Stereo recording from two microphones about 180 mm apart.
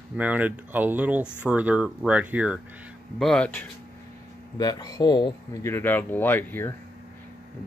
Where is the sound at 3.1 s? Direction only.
5° left (ahead or behind).